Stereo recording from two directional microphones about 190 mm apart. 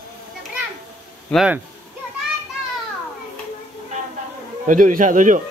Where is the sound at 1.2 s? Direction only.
5° right (ahead or behind).